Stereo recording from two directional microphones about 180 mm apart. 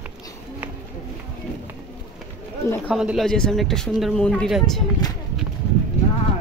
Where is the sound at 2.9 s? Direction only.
Centre (ahead or behind).